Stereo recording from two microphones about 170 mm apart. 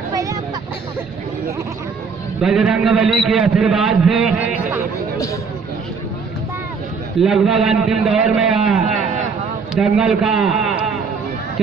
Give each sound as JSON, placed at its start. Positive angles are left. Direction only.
{"t": 0.1, "sound": "vehicle", "side_deg": -20}
{"t": 2.4, "sound": "a man's voice", "side_deg": -5}
{"t": 7.2, "sound": "a man's voice", "side_deg": -5}